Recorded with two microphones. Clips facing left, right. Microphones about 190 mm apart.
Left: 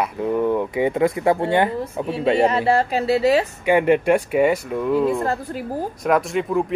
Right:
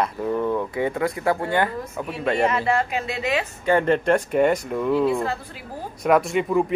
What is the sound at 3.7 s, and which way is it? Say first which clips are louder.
Speech: left 2 dB; 10° left (ahead or behind).